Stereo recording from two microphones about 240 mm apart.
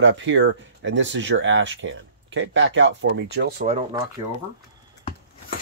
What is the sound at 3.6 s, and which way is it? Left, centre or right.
Speech, right.